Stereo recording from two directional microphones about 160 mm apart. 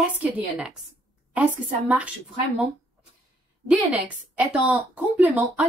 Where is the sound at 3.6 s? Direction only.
5° right (ahead or behind).